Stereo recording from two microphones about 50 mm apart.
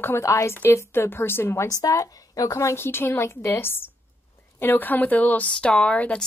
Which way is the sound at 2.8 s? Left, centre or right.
Left.